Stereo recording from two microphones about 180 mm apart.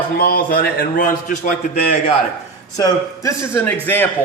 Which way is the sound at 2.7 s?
20° left (ahead or behind).